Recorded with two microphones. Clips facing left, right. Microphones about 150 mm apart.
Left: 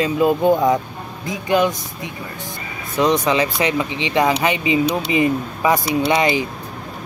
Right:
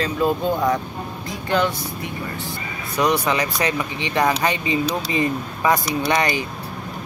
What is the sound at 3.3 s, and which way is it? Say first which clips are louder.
Speech: left 3 dB; 20° left (ahead or behind).